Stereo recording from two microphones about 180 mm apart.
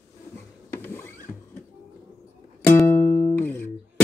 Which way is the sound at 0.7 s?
10° left (ahead or behind).